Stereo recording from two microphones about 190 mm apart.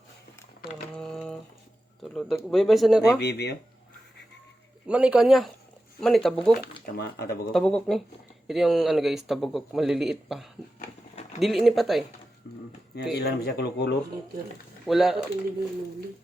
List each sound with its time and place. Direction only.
0.6 s a sound: 5° left (ahead or behind)
2.1 s speech: centre (ahead or behind)
3.2 s speech: 60° left (ahead or behind)
4.9 s speech: 5° right (ahead or behind)
6.6 s speech: 55° left (ahead or behind)
7.5 s speech: 5° left (ahead or behind)
13.0 s speech: 60° left (ahead or behind)
14.8 s speech: centre (ahead or behind)